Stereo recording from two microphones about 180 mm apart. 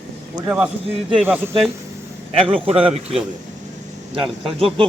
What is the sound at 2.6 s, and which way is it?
Speech, 30° right (ahead or behind).